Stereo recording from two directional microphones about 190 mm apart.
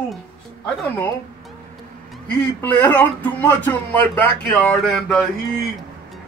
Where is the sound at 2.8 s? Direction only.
10° left (ahead or behind).